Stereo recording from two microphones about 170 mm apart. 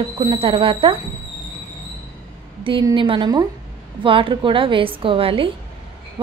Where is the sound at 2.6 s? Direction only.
30° right (ahead or behind).